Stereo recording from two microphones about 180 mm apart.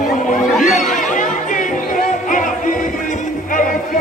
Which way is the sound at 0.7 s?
45° left (ahead or behind).